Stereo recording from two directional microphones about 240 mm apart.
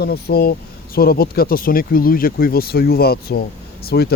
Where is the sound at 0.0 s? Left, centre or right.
Left.